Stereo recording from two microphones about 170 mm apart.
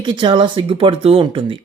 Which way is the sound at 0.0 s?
25° right (ahead or behind).